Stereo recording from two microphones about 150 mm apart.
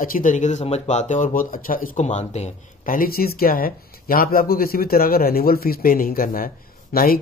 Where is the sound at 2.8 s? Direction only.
75° left (ahead or behind).